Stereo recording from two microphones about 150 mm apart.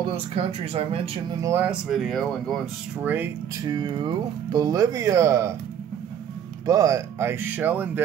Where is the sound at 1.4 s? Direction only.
20° right (ahead or behind).